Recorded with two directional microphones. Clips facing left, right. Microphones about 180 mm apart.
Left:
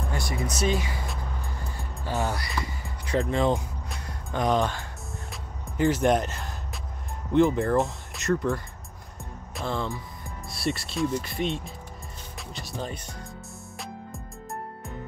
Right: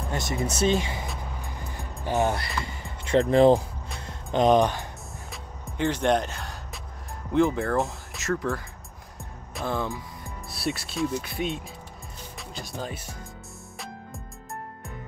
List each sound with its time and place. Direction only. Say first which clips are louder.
0.1 s speech: right 4 dB; 25° right (ahead or behind)
1.4 s music: even; 15° right (ahead or behind)
3.1 s speech: right 7 dB; 35° right (ahead or behind)
4.0 s music: right 6 dB; 25° right (ahead or behind)
5.3 s music: even; centre (ahead or behind)
7.3 s speech: left 2 dB; centre (ahead or behind)
9.2 s music: right 1 dB; centre (ahead or behind)
10.5 s speech: left 1 dB; centre (ahead or behind)